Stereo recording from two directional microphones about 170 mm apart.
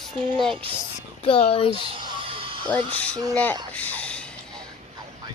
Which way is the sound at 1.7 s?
35° right (ahead or behind).